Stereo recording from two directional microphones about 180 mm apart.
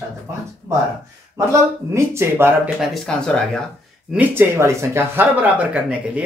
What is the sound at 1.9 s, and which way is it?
Speech, 15° right (ahead or behind).